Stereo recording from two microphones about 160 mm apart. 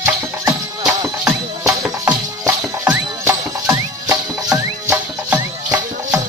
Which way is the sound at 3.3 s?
20° right (ahead or behind).